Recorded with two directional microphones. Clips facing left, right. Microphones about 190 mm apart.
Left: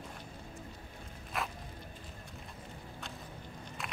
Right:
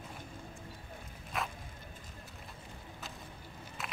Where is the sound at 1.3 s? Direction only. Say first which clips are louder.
Even; centre (ahead or behind).